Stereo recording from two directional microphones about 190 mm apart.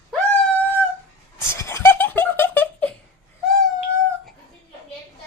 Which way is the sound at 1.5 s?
15° left (ahead or behind).